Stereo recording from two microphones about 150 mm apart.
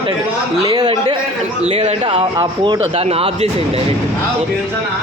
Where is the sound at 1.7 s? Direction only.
40° right (ahead or behind).